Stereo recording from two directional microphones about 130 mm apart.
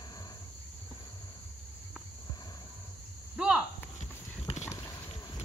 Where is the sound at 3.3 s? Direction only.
10° right (ahead or behind).